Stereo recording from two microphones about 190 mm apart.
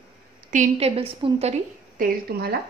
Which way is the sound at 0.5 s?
35° right (ahead or behind).